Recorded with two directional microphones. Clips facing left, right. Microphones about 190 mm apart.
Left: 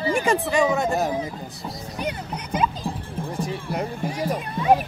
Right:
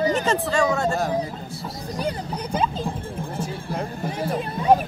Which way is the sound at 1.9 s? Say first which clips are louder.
Right 3 dB; 35° right (ahead or behind).